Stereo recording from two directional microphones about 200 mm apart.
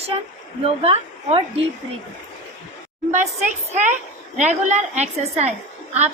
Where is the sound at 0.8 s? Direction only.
30° right (ahead or behind).